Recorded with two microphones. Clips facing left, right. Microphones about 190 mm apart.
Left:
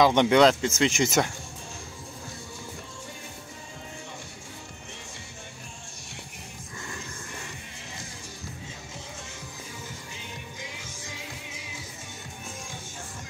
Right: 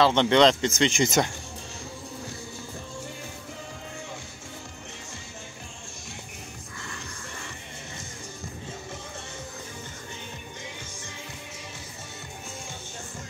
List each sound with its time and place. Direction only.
0.0 s speech: 10° left (ahead or behind)
10.8 s music: 85° left